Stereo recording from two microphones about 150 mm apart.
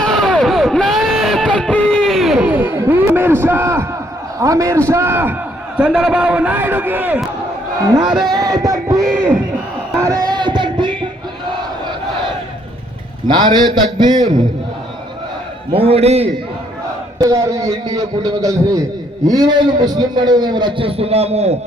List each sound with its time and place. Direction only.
0.0 s a sound: 5° left (ahead or behind); by 3.8 s 15° right (ahead or behind)
4.4 s a man's voice: 20° right (ahead or behind)
5.7 s a man's voice: 5° right (ahead or behind)
8.2 s a sound: 25° right (ahead or behind)
9.1 s speech: 15° right (ahead or behind)
10.0 s music: 25° right (ahead or behind)
13.2 s a man's voice: 30° right (ahead or behind)
15.7 s a man's voice: 40° right (ahead or behind)
17.2 s a man's voice: 25° right (ahead or behind); by 21.6 s 45° right (ahead or behind)